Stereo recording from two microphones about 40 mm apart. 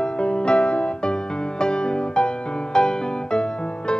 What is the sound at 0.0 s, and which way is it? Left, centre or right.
Music, left.